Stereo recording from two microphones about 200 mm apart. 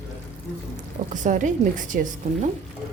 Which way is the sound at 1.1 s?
40° right (ahead or behind).